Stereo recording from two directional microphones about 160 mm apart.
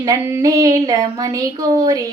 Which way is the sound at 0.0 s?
15° right (ahead or behind).